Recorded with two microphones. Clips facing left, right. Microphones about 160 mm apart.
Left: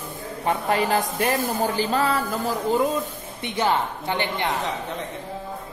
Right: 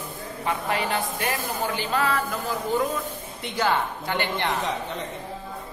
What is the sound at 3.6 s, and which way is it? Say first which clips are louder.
Speech: left 1 dB; 20° left (ahead or behind).